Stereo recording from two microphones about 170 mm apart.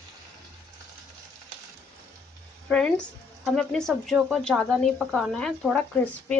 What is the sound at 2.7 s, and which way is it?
Speech, 5° left (ahead or behind).